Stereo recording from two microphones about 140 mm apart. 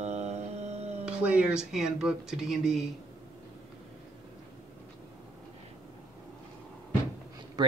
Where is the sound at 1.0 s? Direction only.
10° right (ahead or behind).